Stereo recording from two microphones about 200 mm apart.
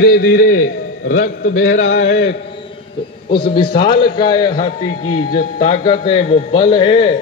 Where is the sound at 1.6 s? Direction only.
75° left (ahead or behind).